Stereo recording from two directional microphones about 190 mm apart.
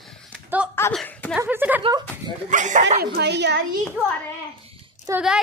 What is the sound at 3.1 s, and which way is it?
Speech, 65° right (ahead or behind).